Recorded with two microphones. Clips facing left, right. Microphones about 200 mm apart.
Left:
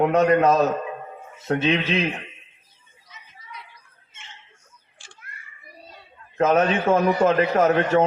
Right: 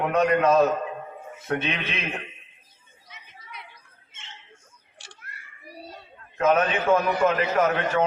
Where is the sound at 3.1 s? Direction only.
60° right (ahead or behind).